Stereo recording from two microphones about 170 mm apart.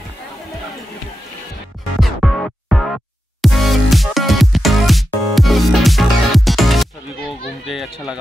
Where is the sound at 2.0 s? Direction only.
Centre (ahead or behind).